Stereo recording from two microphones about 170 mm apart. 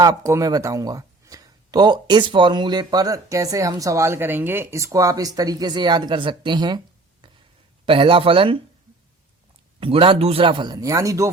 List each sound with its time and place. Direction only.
0.0 s speech: 20° right (ahead or behind)
9.8 s speech: 30° right (ahead or behind)